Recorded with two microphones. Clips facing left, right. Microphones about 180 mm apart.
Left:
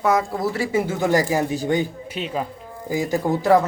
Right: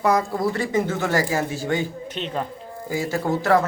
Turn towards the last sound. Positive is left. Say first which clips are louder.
# left 3 dB
turn(degrees=15)  # may be behind; listen again after turning